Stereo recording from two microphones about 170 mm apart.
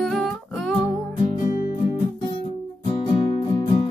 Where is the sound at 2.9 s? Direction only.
30° left (ahead or behind).